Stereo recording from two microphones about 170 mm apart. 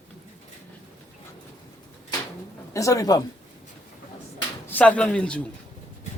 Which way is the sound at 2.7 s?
20° left (ahead or behind).